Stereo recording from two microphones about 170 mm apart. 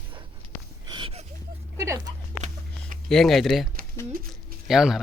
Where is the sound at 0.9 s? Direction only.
35° right (ahead or behind).